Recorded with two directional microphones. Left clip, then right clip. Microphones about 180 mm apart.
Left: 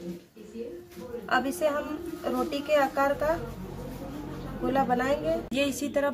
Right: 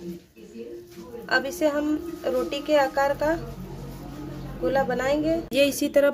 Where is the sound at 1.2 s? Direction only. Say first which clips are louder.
Right 3 dB; 25° right (ahead or behind).